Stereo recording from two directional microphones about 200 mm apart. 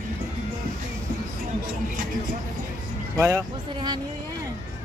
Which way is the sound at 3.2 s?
15° right (ahead or behind).